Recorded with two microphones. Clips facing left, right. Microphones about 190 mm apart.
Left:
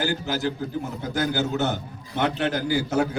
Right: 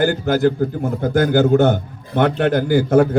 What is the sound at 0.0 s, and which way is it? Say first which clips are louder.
A man's voice: right 10 dB; 55° right (ahead or behind).